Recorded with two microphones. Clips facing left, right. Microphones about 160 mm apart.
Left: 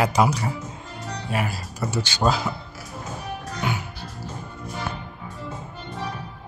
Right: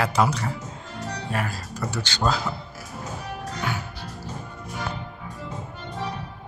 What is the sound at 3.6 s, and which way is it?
Music, 15° left (ahead or behind).